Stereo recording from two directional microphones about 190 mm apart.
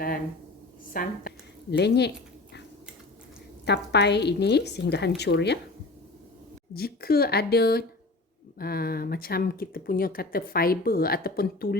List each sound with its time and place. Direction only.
0.9 s speech: 45° left (ahead or behind)
1.7 s dog: 60° left (ahead or behind)
3.7 s a woman's voice: 60° left (ahead or behind)
6.7 s a woman's voice: 55° left (ahead or behind)